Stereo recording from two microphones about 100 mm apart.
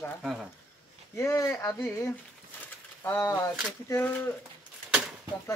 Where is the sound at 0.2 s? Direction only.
5° right (ahead or behind).